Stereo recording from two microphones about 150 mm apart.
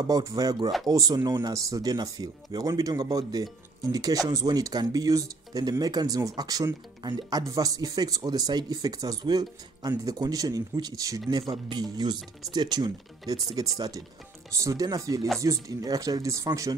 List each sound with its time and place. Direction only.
0.0 s speech: 25° right (ahead or behind)